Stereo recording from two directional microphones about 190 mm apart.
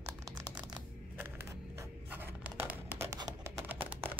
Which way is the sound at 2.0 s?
10° right (ahead or behind).